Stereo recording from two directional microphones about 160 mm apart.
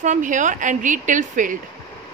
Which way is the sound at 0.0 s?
50° right (ahead or behind).